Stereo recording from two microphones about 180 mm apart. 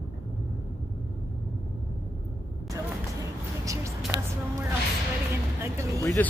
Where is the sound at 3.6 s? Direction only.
20° right (ahead or behind).